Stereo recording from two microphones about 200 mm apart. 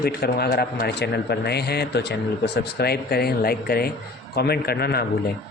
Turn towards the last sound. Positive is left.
turn(degrees=50)  # may be behind; listen again after turning